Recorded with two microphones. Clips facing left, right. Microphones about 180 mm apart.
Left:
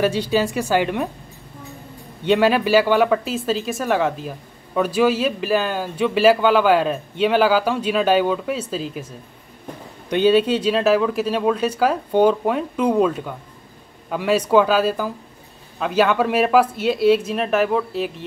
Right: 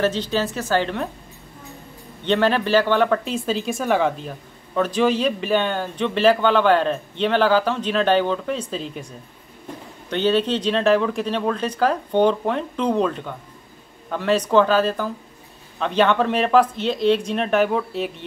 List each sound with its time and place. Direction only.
0.0 s speech: 10° left (ahead or behind)
2.2 s speech: 10° left (ahead or behind)
10.0 s speech: 10° left (ahead or behind)